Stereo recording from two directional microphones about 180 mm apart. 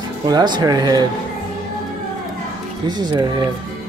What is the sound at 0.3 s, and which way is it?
Speech, 20° right (ahead or behind).